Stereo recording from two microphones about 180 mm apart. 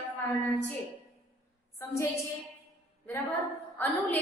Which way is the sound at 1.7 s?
15° left (ahead or behind).